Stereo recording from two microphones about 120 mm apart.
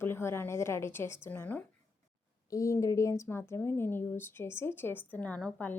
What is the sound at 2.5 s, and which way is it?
A woman's voice, 30° left (ahead or behind).